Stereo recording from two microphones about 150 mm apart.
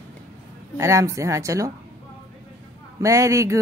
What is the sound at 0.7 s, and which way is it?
Speech, 20° right (ahead or behind).